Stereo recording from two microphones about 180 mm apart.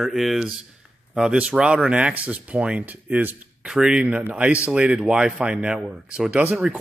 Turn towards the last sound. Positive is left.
turn(degrees=-5)  # may be behind; listen again after turning